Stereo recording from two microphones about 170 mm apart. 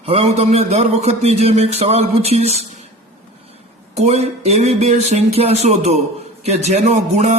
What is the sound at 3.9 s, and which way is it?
A man's voice, 40° right (ahead or behind).